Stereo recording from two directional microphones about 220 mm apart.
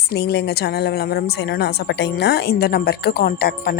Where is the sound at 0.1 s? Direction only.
50° left (ahead or behind).